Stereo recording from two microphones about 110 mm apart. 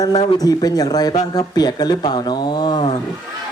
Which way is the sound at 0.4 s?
35° left (ahead or behind).